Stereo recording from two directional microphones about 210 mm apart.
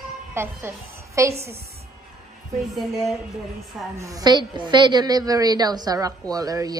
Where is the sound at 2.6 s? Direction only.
Centre (ahead or behind).